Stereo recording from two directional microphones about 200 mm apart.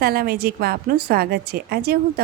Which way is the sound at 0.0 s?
50° right (ahead or behind).